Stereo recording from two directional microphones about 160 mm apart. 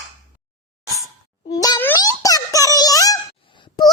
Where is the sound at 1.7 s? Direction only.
15° left (ahead or behind).